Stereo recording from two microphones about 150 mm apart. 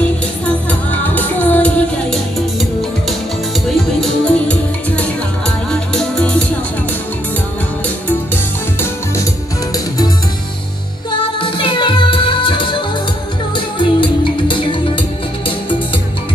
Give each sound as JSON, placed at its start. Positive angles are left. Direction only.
{"t": 0.7, "sound": "music", "side_deg": 10}
{"t": 3.6, "sound": "music", "side_deg": 0}
{"t": 11.3, "sound": "music", "side_deg": 35}